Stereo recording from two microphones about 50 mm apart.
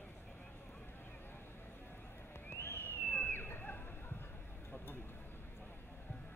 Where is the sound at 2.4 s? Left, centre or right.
Left.